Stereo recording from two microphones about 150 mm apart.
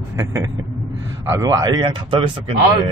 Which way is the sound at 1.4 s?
25° right (ahead or behind).